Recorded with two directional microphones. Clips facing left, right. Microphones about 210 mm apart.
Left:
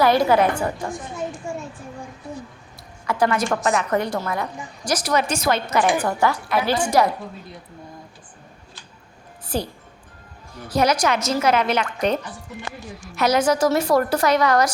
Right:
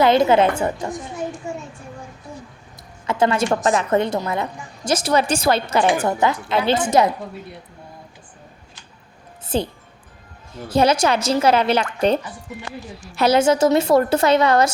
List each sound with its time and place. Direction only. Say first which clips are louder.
0.0 s a woman's voice: right 2 dB; 20° right (ahead or behind)
1.5 s a sound: even; 20° right (ahead or behind)
3.1 s a woman's voice: right 2 dB; 25° right (ahead or behind)
9.5 s a woman's voice: right 4 dB; 25° right (ahead or behind)